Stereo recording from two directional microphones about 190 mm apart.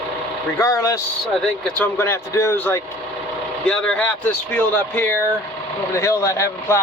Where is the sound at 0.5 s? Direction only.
20° left (ahead or behind).